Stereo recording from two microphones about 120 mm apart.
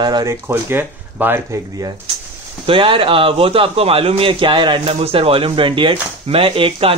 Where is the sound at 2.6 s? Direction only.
50° right (ahead or behind).